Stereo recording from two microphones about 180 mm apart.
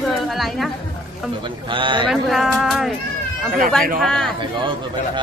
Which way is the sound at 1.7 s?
25° right (ahead or behind).